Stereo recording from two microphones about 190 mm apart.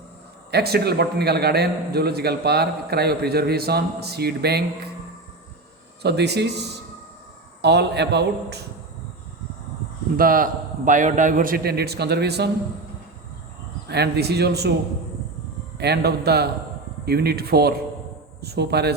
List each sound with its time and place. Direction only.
0.5 s a man's voice: 55° right (ahead or behind)
6.0 s a man's voice: 60° right (ahead or behind)
10.2 s a man's voice: 45° right (ahead or behind)
13.8 s a man's voice: 60° right (ahead or behind)
15.8 s a man's voice: 60° right (ahead or behind)